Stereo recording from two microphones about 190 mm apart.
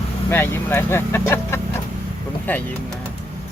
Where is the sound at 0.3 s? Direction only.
10° left (ahead or behind).